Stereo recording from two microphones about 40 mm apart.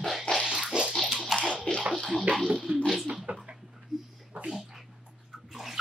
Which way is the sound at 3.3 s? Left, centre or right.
Right.